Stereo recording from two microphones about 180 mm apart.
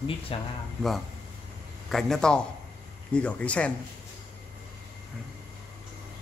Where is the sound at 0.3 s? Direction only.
30° left (ahead or behind).